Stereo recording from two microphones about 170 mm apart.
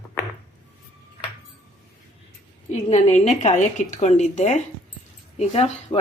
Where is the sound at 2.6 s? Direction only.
45° left (ahead or behind).